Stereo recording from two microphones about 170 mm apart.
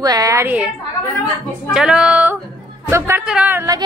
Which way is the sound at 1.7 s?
5° right (ahead or behind).